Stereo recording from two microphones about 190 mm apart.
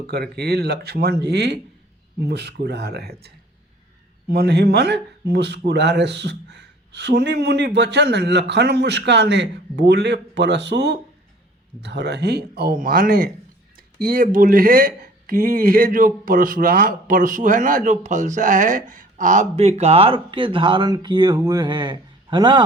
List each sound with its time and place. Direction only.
0.1 s a man's voice: 55° right (ahead or behind); by 22.6 s 25° right (ahead or behind)